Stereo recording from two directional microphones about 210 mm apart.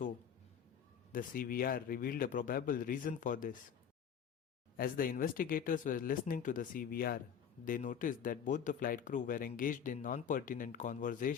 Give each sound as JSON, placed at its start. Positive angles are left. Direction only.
{"t": 1.1, "sound": "speech", "side_deg": 45}
{"t": 4.8, "sound": "speech", "side_deg": 40}